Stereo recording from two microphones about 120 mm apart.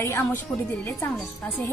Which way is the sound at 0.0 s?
20° left (ahead or behind).